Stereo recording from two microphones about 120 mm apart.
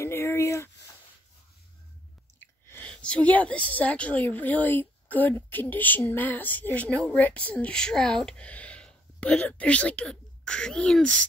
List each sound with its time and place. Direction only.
0.0 s a sound: 20° left (ahead or behind)
2.4 s chewing: 20° left (ahead or behind)
2.9 s a woman's voice: 10° left (ahead or behind)